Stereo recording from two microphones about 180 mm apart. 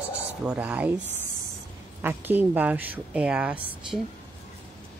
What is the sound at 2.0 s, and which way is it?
A woman's voice, 10° right (ahead or behind).